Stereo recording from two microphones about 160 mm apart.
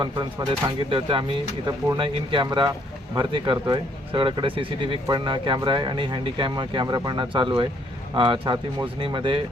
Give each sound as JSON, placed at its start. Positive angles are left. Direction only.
{"t": 0.0, "sound": "speech", "side_deg": -25}